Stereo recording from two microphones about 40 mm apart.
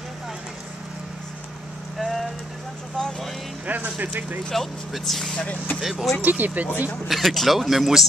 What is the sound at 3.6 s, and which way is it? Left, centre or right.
Speech, right.